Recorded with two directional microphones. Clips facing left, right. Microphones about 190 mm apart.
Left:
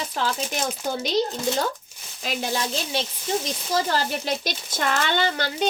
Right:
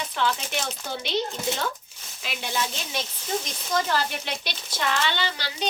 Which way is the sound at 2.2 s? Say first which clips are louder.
Left 3 dB; 40° left (ahead or behind).